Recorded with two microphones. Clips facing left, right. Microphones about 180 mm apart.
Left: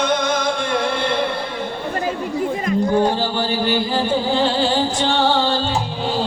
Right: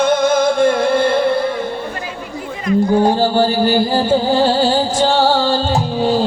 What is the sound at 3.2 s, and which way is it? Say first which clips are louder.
Music: right 7 dB; 40° right (ahead or behind).